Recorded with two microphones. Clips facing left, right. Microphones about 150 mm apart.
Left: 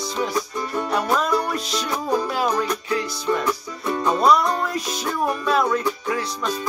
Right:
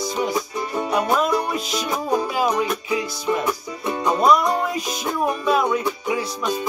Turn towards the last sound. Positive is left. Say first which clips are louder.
# right 1 dB
turn(degrees=-10)  # may be behind; listen again after turning